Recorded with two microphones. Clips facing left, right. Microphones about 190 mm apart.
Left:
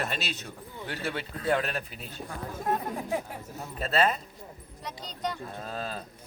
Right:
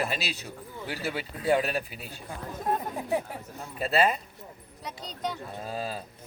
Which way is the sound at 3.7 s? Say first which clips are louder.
Right 1 dB; 10° right (ahead or behind).